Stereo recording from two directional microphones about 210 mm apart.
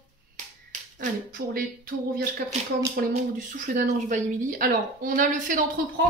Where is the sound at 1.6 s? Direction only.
45° right (ahead or behind).